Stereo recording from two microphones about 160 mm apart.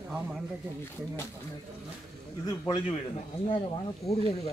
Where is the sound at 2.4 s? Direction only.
30° left (ahead or behind).